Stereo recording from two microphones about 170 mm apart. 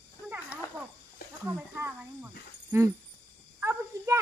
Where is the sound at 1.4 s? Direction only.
10° right (ahead or behind).